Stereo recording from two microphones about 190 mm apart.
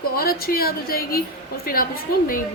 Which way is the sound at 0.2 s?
50° left (ahead or behind).